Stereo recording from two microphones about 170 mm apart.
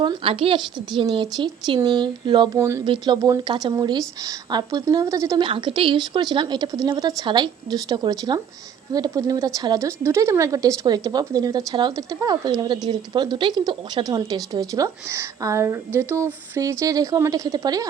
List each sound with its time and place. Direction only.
0.0 s a woman's voice: 30° right (ahead or behind)
2.6 s speech: 15° right (ahead or behind)
2.8 s a woman's voice: 25° right (ahead or behind)
5.5 s a woman's voice: 30° right (ahead or behind)